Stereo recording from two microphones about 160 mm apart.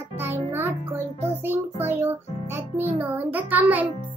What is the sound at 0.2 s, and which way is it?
Music, 15° right (ahead or behind).